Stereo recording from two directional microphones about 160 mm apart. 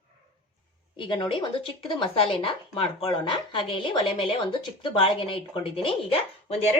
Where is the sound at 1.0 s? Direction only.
30° left (ahead or behind).